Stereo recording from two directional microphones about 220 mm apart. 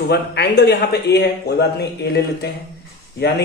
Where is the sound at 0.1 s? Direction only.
50° left (ahead or behind).